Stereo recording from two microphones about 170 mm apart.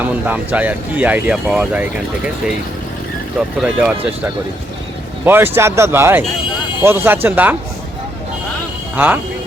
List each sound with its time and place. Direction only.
0.0 s speech: 10° right (ahead or behind)
3.6 s speech: 5° right (ahead or behind)